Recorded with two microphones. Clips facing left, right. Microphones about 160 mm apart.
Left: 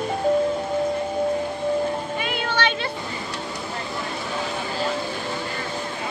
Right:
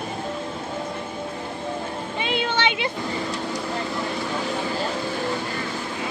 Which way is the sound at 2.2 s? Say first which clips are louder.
Even; 25° right (ahead or behind).